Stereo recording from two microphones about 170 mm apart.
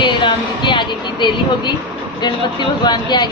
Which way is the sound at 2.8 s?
25° left (ahead or behind).